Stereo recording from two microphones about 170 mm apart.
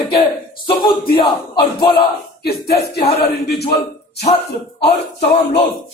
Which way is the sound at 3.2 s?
70° left (ahead or behind).